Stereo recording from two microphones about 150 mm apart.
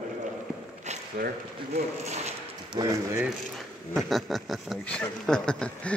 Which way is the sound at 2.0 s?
50° right (ahead or behind).